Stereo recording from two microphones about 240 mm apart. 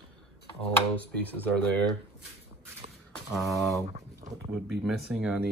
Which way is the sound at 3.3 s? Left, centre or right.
Centre.